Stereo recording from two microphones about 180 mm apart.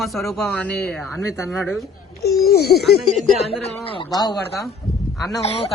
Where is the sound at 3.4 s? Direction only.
35° left (ahead or behind).